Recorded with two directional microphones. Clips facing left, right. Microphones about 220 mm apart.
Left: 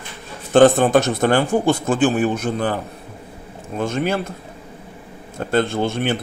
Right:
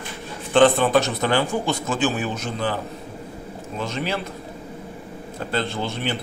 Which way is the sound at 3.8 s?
50° left (ahead or behind).